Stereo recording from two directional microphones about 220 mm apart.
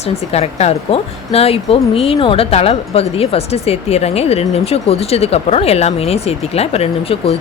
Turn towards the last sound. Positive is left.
turn(degrees=25)  # may be behind; listen again after turning